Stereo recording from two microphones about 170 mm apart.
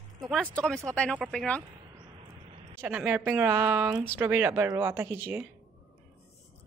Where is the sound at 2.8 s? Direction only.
10° right (ahead or behind).